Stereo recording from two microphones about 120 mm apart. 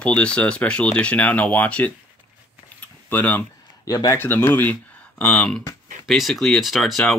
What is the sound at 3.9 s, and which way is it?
Speech, 30° left (ahead or behind).